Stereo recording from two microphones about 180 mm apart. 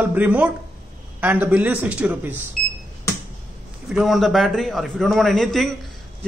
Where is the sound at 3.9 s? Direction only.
Centre (ahead or behind).